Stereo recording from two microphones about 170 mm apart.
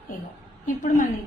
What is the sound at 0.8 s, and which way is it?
Speech, 50° left (ahead or behind).